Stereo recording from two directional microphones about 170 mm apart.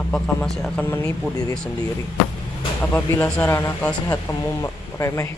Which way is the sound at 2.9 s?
10° left (ahead or behind).